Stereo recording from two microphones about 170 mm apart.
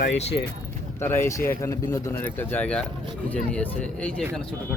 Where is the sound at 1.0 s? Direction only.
15° left (ahead or behind).